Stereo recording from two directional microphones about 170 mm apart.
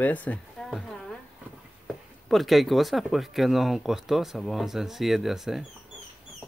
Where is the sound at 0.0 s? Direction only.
10° left (ahead or behind).